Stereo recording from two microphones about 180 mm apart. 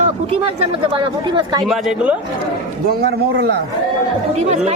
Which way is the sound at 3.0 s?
65° right (ahead or behind).